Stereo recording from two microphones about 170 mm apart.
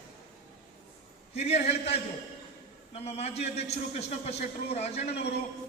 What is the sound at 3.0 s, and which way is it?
A man's voice, 40° left (ahead or behind).